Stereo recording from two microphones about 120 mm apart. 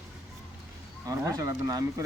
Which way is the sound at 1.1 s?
30° right (ahead or behind).